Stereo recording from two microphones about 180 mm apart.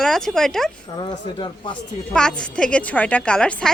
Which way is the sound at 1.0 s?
25° left (ahead or behind).